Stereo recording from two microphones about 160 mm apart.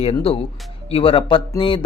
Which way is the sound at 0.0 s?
35° left (ahead or behind).